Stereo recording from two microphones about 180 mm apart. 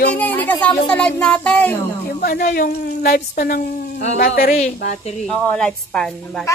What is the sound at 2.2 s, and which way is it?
Speech, 50° left (ahead or behind).